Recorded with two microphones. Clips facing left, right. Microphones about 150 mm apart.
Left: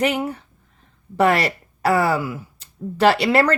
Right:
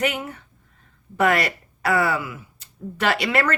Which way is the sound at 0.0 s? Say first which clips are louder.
Left 4 dB; 30° left (ahead or behind).